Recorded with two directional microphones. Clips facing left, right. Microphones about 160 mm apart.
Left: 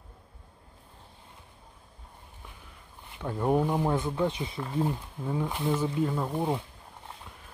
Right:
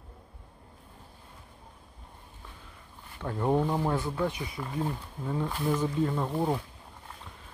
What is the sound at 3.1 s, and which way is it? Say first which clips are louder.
Speech: left 1 dB; 10° left (ahead or behind).